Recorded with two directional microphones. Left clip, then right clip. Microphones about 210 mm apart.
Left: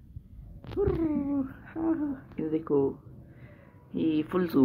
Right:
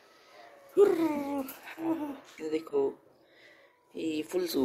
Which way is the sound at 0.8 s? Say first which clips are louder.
Right 4 dB; 10° right (ahead or behind).